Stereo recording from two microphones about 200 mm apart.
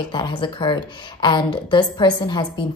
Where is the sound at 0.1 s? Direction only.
20° left (ahead or behind).